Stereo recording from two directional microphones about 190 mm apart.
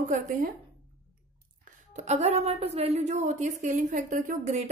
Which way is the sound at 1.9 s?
35° right (ahead or behind).